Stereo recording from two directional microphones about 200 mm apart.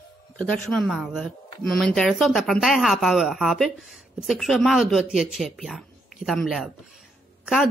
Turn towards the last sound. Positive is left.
turn(degrees=0)  # may be behind; listen again after turning